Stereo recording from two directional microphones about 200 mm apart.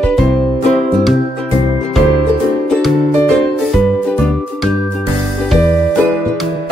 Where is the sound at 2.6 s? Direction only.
Centre (ahead or behind).